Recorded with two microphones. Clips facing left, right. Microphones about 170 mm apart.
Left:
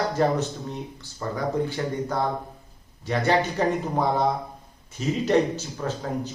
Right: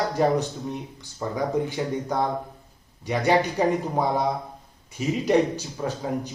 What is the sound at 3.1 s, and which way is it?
A man's voice, 15° right (ahead or behind).